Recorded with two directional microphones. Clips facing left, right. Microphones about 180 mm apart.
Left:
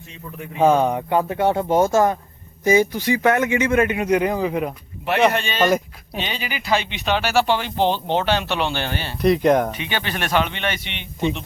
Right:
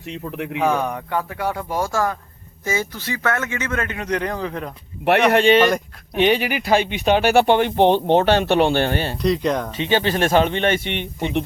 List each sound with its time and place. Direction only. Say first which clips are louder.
0.0 s speech: right 7 dB; 75° right (ahead or behind)
0.6 s speech: left 5 dB; 20° left (ahead or behind)
5.0 s speech: right 4 dB; 65° right (ahead or behind)
9.2 s speech: left 6 dB; 55° left (ahead or behind)
9.7 s speech: right 7 dB; 30° right (ahead or behind)
10.8 s speech: right 10 dB; 50° right (ahead or behind)